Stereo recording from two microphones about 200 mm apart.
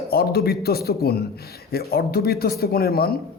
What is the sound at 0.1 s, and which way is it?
A man's voice, 50° left (ahead or behind).